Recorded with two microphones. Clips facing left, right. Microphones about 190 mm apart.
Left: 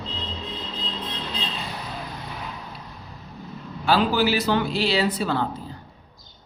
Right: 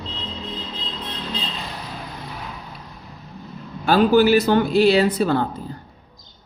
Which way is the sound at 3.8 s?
50° right (ahead or behind).